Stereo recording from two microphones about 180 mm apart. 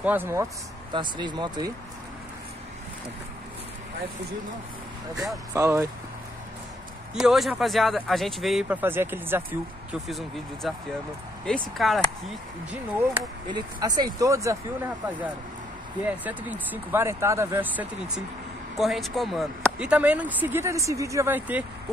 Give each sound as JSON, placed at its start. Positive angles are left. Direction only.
{"t": 0.0, "sound": "speech", "side_deg": -10}
{"t": 0.9, "sound": "speech", "side_deg": -25}
{"t": 5.5, "sound": "speech", "side_deg": -15}
{"t": 7.2, "sound": "speech", "side_deg": 0}
{"t": 8.8, "sound": "speech", "side_deg": -10}
{"t": 10.0, "sound": "speech", "side_deg": 0}
{"t": 13.5, "sound": "speech", "side_deg": -20}
{"t": 16.1, "sound": "speech", "side_deg": -10}